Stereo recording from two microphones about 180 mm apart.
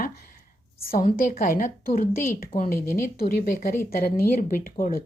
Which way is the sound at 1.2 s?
50° left (ahead or behind).